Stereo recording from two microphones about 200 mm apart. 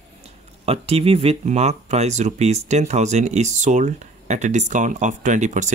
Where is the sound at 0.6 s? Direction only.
30° right (ahead or behind).